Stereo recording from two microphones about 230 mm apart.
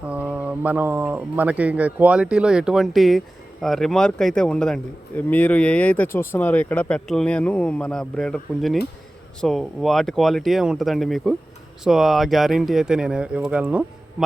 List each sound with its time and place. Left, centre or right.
0.1 s speech: centre